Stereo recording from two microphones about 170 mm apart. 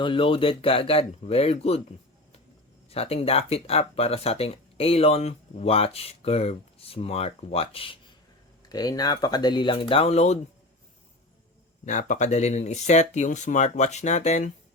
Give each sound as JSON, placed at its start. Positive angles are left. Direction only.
{"t": 0.0, "sound": "speech", "side_deg": 30}
{"t": 2.9, "sound": "speech", "side_deg": 35}
{"t": 8.6, "sound": "speech", "side_deg": 25}
{"t": 11.9, "sound": "speech", "side_deg": 45}